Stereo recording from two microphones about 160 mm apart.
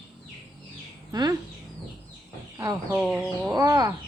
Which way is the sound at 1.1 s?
25° right (ahead or behind).